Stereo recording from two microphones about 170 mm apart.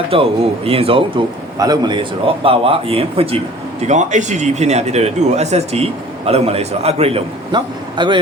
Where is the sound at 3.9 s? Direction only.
45° right (ahead or behind).